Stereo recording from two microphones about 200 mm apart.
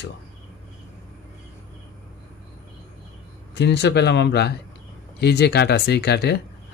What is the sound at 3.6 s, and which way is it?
Speech, 60° left (ahead or behind).